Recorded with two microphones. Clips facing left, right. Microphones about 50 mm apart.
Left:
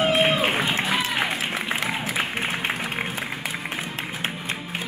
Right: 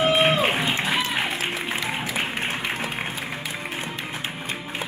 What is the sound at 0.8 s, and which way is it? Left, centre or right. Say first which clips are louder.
Music: even; centre.